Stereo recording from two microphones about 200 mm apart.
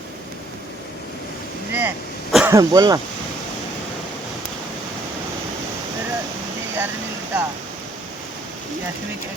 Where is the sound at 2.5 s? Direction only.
15° right (ahead or behind).